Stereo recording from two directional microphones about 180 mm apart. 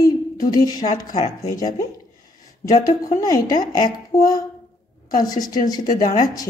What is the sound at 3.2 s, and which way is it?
A woman's voice, 20° left (ahead or behind).